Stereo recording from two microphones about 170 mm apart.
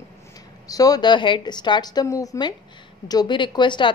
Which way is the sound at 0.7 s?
20° left (ahead or behind).